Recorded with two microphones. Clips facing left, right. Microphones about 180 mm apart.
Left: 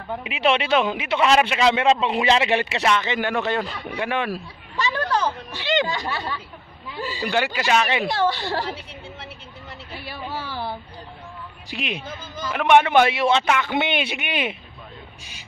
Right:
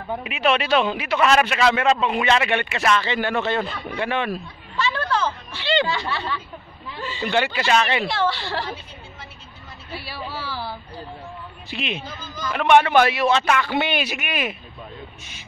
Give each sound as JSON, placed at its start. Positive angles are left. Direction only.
{"t": 0.3, "sound": "a man's voice", "side_deg": 25}
{"t": 5.2, "sound": "a sound", "side_deg": 15}
{"t": 5.9, "sound": "a man's voice", "side_deg": 15}
{"t": 9.9, "sound": "a man's voice", "side_deg": 50}
{"t": 10.3, "sound": "a sound", "side_deg": 20}
{"t": 11.7, "sound": "a man's voice", "side_deg": 10}